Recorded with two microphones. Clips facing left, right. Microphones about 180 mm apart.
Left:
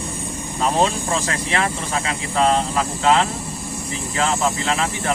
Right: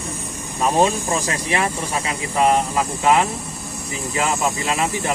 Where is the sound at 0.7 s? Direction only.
15° right (ahead or behind).